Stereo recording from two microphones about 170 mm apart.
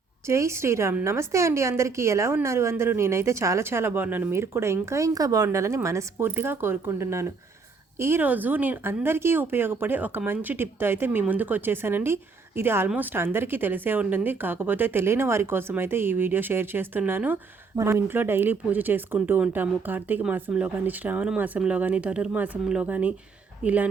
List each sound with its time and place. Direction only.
0.3 s speech: 15° right (ahead or behind)